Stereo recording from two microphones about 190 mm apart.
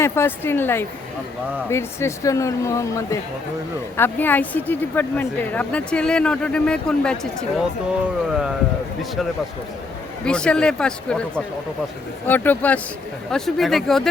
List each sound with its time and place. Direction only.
0.0 s speech: 10° left (ahead or behind); by 8.5 s 5° right (ahead or behind)
10.2 s speech: 5° left (ahead or behind)